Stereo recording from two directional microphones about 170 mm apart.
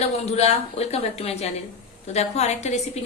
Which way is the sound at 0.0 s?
40° left (ahead or behind).